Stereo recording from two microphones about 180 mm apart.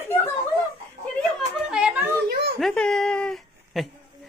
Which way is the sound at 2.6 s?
5° left (ahead or behind).